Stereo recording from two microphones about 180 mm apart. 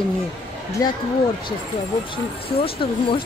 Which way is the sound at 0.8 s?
20° left (ahead or behind).